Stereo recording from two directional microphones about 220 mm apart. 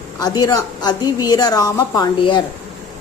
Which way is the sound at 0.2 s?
20° left (ahead or behind).